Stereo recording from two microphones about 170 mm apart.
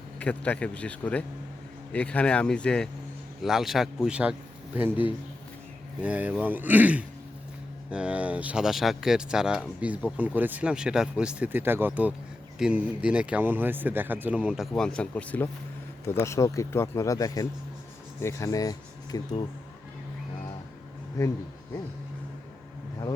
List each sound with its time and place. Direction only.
0.2 s speech: 10° left (ahead or behind)
14.8 s speech: 5° left (ahead or behind); by 19.4 s 20° left (ahead or behind)